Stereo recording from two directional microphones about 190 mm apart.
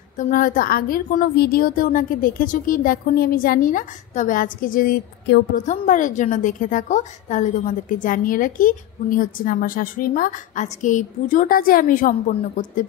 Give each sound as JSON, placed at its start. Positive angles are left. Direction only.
{"t": 0.2, "sound": "a woman's voice", "side_deg": 45}